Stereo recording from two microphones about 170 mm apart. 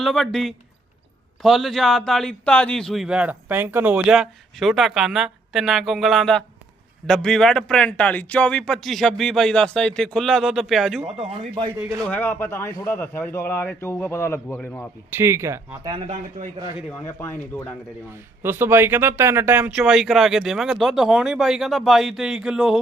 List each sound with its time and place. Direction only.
0.0 s a man's voice: centre (ahead or behind)
11.2 s a man's voice: 35° right (ahead or behind)
12.0 s a man's voice: 10° left (ahead or behind)
15.2 s speech: 15° right (ahead or behind)
15.9 s a man's voice: 35° right (ahead or behind)
16.9 s a man's voice: 10° left (ahead or behind)
18.1 s a man's voice: 10° right (ahead or behind)